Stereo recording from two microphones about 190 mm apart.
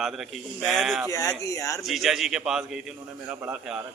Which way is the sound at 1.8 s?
Centre (ahead or behind).